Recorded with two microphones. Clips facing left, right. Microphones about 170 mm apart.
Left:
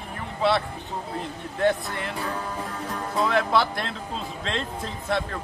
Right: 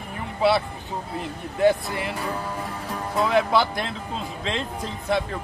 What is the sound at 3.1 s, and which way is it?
Speech, centre (ahead or behind).